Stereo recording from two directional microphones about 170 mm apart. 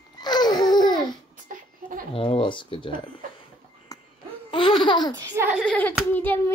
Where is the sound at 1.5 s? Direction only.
50° right (ahead or behind).